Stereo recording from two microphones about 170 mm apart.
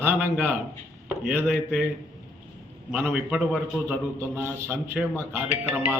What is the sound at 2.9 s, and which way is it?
A man's voice, 10° right (ahead or behind).